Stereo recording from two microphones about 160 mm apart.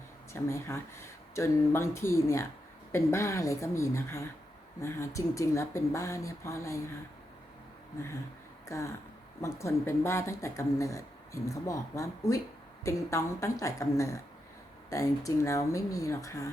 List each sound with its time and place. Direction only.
0.3 s speech: 15° left (ahead or behind)
8.6 s a sound: 20° left (ahead or behind)
9.4 s speech: 15° left (ahead or behind)